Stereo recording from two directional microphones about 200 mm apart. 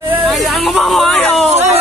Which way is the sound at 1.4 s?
30° right (ahead or behind).